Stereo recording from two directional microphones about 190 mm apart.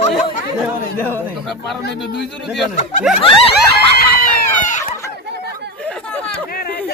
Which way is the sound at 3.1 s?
Centre (ahead or behind).